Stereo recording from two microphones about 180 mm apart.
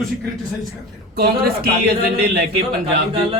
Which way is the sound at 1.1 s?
60° right (ahead or behind).